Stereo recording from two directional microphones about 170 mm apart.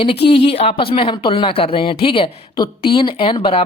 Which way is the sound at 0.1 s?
75° left (ahead or behind).